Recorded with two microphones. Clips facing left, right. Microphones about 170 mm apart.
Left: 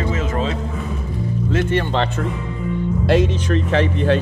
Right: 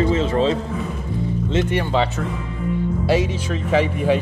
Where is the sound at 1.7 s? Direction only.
5° right (ahead or behind).